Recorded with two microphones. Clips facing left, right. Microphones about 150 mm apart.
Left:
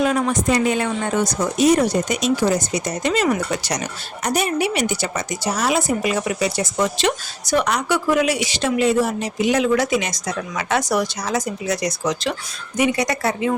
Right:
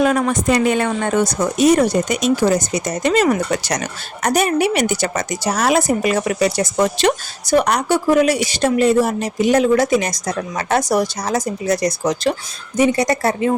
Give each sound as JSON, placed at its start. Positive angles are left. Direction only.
{"t": 0.0, "sound": "speech", "side_deg": -55}